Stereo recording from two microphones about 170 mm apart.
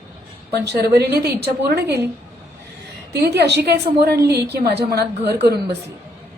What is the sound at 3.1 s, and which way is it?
A woman's voice, 75° right (ahead or behind).